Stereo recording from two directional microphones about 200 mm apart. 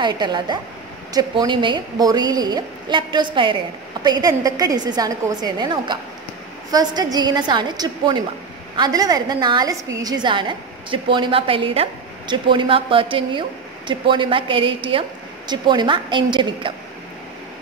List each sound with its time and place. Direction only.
0.0 s a woman's voice: 20° right (ahead or behind)